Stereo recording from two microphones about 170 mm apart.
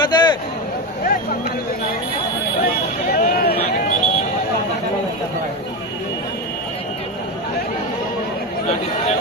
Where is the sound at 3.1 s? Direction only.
65° left (ahead or behind).